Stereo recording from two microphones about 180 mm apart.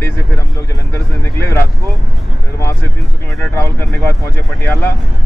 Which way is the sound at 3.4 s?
10° left (ahead or behind).